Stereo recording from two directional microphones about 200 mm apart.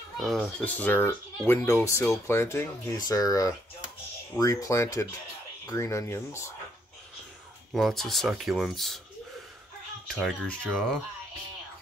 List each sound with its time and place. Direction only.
0.2 s speech: centre (ahead or behind)
7.7 s speech: centre (ahead or behind)
10.0 s speech: centre (ahead or behind)